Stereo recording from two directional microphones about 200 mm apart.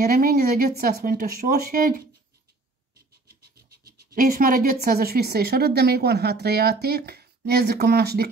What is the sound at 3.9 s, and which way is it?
A woman's voice, 45° right (ahead or behind).